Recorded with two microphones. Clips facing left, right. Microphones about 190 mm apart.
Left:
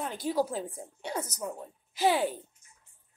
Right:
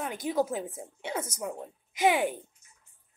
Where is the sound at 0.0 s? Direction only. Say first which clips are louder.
Even; 10° right (ahead or behind).